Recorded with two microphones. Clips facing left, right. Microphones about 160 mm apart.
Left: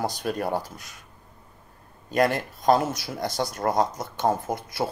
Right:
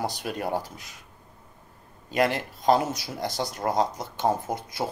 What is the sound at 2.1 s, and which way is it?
Speech, 45° left (ahead or behind).